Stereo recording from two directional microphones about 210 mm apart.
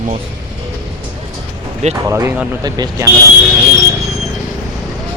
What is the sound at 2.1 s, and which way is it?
Speech, 10° right (ahead or behind).